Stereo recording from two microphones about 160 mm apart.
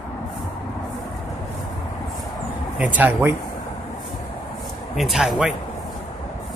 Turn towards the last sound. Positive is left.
turn(degrees=-5)  # may be behind; listen again after turning